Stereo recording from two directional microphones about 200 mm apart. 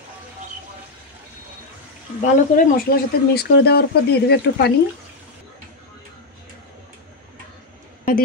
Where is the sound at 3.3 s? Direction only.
55° left (ahead or behind).